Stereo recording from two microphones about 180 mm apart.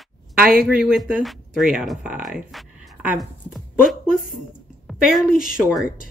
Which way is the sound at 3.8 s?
50° left (ahead or behind).